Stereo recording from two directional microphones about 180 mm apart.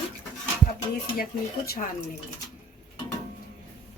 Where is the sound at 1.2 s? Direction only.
55° left (ahead or behind).